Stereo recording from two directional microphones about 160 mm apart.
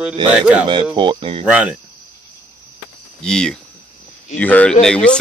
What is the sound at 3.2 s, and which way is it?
Speech, 5° left (ahead or behind).